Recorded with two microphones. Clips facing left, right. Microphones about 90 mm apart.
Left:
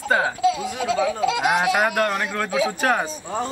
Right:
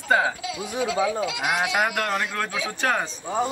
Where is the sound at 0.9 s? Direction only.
40° left (ahead or behind).